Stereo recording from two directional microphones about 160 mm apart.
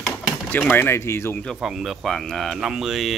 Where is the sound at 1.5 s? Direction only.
5° right (ahead or behind).